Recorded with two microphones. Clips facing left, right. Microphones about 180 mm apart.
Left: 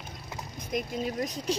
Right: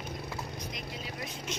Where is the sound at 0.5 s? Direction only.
50° left (ahead or behind).